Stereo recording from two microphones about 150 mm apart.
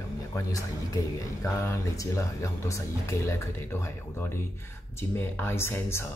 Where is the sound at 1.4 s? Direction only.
20° left (ahead or behind).